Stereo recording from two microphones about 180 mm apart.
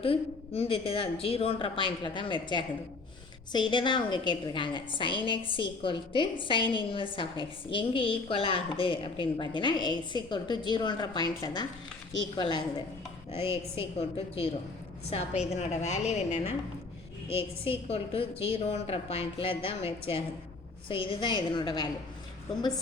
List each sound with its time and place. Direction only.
0.0 s a woman's voice: 35° left (ahead or behind)
13.3 s a woman's voice: 15° right (ahead or behind)
15.1 s speech: 35° left (ahead or behind)
17.8 s a woman's voice: 35° left (ahead or behind)